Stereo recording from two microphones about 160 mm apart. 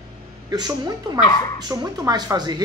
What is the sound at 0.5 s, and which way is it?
Speech, 25° right (ahead or behind).